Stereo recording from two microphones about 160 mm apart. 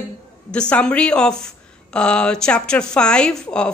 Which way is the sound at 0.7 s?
5° left (ahead or behind).